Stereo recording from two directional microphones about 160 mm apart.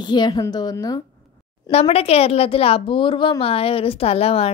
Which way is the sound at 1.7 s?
40° left (ahead or behind).